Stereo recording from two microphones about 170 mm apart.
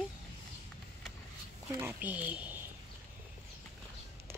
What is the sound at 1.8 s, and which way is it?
Speech, 15° right (ahead or behind).